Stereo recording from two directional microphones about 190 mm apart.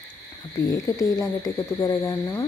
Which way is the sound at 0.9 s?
15° left (ahead or behind).